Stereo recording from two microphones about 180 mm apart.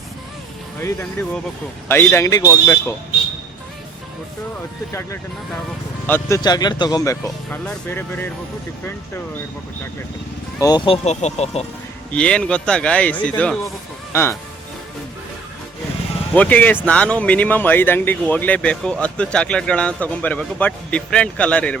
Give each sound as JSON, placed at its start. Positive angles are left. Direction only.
{"t": 1.9, "sound": "speech", "side_deg": 15}
{"t": 6.1, "sound": "speech", "side_deg": 15}
{"t": 10.6, "sound": "speech", "side_deg": 25}
{"t": 12.1, "sound": "speech", "side_deg": 5}
{"t": 16.3, "sound": "speech", "side_deg": 10}